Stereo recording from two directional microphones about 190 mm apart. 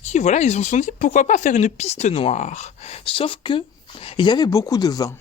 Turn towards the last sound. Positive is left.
turn(degrees=20)  # may be behind; listen again after turning